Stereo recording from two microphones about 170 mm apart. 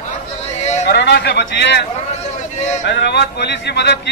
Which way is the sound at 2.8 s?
85° left.